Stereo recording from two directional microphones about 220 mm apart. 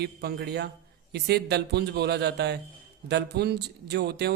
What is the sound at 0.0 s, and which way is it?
A man's voice, 45° right (ahead or behind).